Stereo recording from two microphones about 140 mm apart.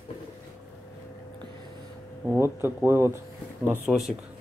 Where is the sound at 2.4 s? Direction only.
15° right (ahead or behind).